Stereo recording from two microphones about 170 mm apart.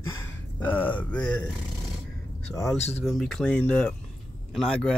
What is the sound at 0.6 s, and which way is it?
Speech, 10° left (ahead or behind).